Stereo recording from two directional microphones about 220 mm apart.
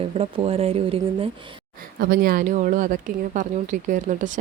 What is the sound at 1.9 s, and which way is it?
A woman's voice, 40° right (ahead or behind).